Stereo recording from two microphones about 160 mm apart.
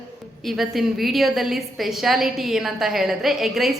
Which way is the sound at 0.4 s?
Centre (ahead or behind).